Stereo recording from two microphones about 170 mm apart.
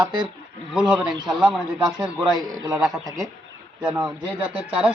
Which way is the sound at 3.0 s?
20° right (ahead or behind).